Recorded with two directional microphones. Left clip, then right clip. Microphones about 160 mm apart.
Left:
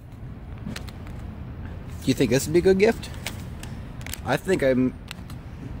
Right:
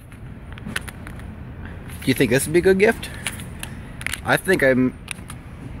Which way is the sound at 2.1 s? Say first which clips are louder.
Right 3 dB; centre (ahead or behind).